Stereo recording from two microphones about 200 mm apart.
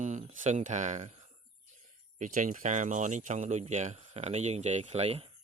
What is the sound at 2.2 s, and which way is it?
Speech, 40° right (ahead or behind).